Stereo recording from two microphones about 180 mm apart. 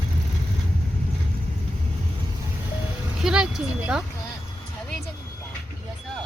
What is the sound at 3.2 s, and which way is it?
Speech, 5° right (ahead or behind).